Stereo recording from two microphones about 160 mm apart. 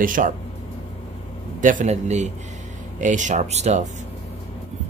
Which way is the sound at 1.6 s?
55° right (ahead or behind).